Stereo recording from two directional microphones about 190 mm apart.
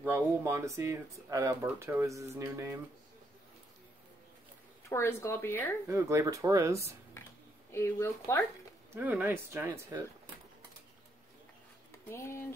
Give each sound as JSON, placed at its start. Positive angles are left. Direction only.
{"t": 0.0, "sound": "speech", "side_deg": -10}
{"t": 4.8, "sound": "speech", "side_deg": 15}
{"t": 5.9, "sound": "speech", "side_deg": -15}
{"t": 7.7, "sound": "speech", "side_deg": 10}
{"t": 8.9, "sound": "speech", "side_deg": -10}
{"t": 12.1, "sound": "speech", "side_deg": 15}